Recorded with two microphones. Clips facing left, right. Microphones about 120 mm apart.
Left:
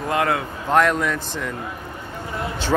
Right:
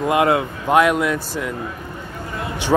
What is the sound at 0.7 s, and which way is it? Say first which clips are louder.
Speech: right 2 dB; 10° right (ahead or behind).